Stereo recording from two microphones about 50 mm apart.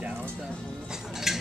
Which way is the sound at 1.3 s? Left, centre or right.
Centre.